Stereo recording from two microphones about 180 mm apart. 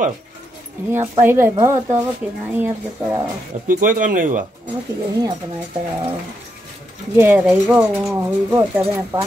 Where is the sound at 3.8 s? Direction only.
50° right (ahead or behind).